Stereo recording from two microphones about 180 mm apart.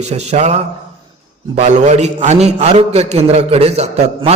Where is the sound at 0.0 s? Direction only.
40° right (ahead or behind).